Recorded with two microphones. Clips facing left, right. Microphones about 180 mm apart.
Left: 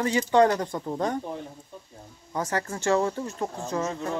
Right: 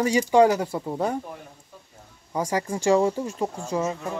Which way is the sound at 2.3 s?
10° right (ahead or behind).